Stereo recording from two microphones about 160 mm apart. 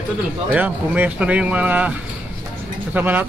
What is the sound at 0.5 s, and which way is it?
A man's voice, 10° right (ahead or behind).